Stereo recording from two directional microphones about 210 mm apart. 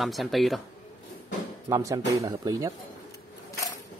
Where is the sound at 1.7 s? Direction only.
15° right (ahead or behind).